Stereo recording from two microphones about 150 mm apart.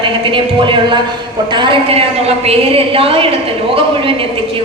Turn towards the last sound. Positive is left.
turn(degrees=-40)  # may be behind; listen again after turning